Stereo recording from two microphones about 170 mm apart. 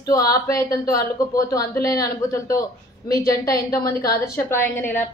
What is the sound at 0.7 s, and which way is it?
A woman's voice, 20° left (ahead or behind).